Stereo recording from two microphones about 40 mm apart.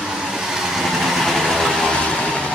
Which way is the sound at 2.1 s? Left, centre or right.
Left.